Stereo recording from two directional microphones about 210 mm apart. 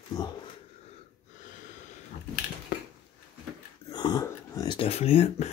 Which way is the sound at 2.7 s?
45° left (ahead or behind).